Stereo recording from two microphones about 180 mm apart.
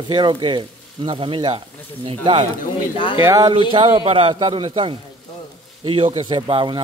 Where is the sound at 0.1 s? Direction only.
25° right (ahead or behind).